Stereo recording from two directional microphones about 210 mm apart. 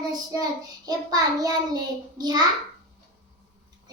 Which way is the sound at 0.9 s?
15° right (ahead or behind).